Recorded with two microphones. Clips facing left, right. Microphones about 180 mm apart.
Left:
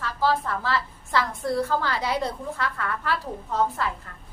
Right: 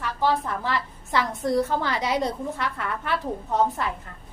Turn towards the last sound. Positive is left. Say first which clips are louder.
# right 2 dB
turn(degrees=-20)  # may be behind; listen again after turning